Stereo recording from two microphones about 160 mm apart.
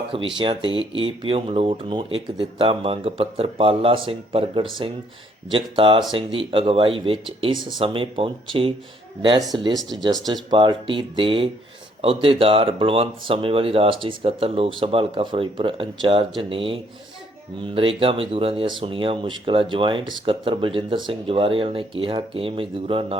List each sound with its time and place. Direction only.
0.3 s speech: 30° right (ahead or behind)